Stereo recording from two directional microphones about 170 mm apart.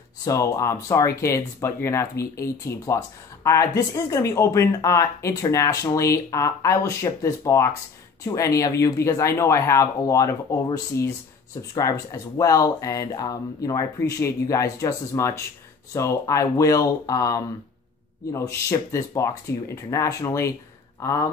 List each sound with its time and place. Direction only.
0.2 s speech: 20° left (ahead or behind)